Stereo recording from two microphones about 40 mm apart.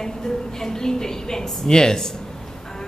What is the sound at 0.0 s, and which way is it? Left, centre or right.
A woman's voice, centre.